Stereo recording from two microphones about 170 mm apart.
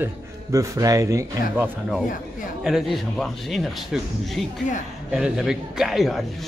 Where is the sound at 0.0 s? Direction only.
20° right (ahead or behind).